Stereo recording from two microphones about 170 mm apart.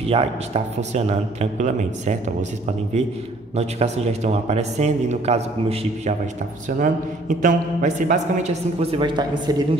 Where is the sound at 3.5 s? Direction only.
40° right (ahead or behind).